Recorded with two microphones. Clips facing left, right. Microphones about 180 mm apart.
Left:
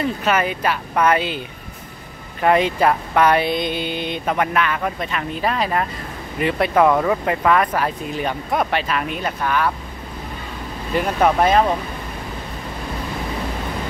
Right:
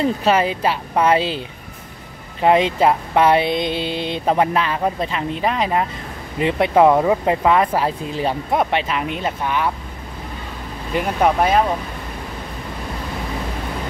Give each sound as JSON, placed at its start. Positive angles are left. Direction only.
{"t": 0.0, "sound": "speech", "side_deg": -30}
{"t": 2.4, "sound": "speech", "side_deg": -20}
{"t": 10.9, "sound": "speech", "side_deg": -15}